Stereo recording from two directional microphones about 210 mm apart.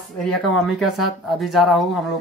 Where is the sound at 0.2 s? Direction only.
Centre (ahead or behind).